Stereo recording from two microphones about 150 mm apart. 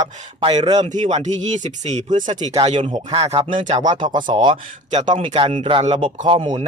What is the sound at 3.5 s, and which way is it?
Speech, 55° right (ahead or behind).